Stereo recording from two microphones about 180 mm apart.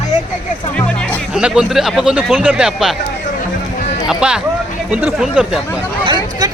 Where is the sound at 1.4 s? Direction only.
5° right (ahead or behind).